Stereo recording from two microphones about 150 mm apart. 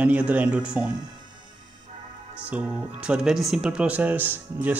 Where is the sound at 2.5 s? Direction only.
5° right (ahead or behind).